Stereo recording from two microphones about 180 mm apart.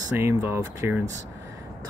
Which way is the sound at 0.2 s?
15° right (ahead or behind).